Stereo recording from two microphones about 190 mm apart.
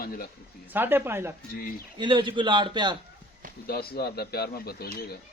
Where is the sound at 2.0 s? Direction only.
25° right (ahead or behind).